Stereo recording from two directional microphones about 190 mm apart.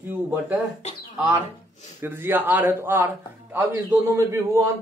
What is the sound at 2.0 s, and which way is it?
A man's voice, 10° right (ahead or behind).